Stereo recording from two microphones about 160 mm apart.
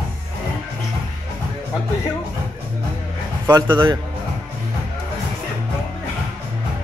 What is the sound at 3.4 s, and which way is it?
Speech, 20° right (ahead or behind).